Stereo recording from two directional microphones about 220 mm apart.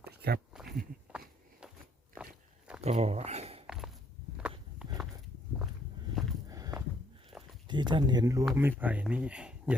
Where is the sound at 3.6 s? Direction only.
Centre (ahead or behind).